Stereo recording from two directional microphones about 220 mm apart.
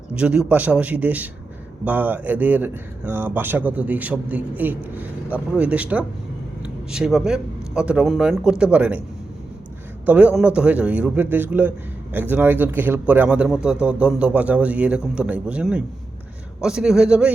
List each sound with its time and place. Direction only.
0.1 s a man's voice: 5° right (ahead or behind)
10.1 s a man's voice: 5° right (ahead or behind)